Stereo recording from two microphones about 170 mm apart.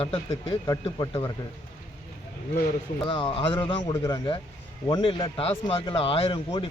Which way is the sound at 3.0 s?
30° left (ahead or behind).